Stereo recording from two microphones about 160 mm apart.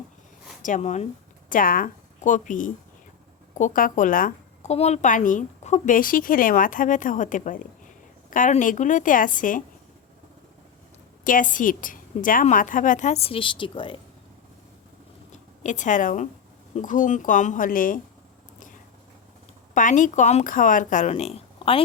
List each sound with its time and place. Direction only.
0.6 s speech: 50° left (ahead or behind)
1.5 s a woman's voice: 60° left (ahead or behind)
11.2 s a woman's voice: 55° left (ahead or behind); by 14.0 s 30° left (ahead or behind)
15.3 s a woman's voice: 50° left (ahead or behind)
19.7 s speech: 55° left (ahead or behind); by 21.8 s 35° left (ahead or behind)